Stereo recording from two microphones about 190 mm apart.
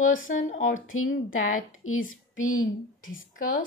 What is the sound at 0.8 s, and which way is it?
A woman's voice, 90° left.